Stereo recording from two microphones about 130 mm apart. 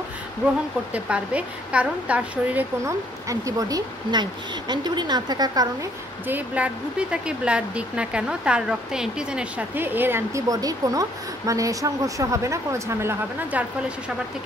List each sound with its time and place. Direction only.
0.9 s speech: 10° right (ahead or behind)
2.8 s speech: 25° right (ahead or behind)
6.2 s speech: 10° right (ahead or behind)